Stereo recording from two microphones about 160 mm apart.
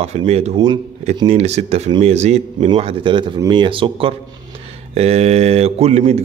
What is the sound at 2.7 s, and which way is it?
Speech, 35° right (ahead or behind).